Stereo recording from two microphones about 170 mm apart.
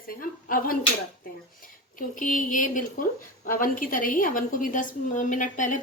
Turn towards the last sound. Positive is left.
turn(degrees=50)  # may be behind; listen again after turning